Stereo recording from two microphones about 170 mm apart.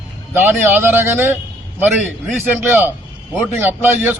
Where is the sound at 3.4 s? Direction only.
15° right (ahead or behind).